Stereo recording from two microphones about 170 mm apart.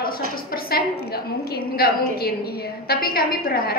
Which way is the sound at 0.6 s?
65° left (ahead or behind).